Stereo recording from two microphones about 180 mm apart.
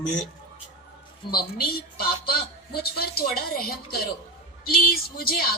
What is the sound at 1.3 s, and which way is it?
A woman's voice, 55° left (ahead or behind).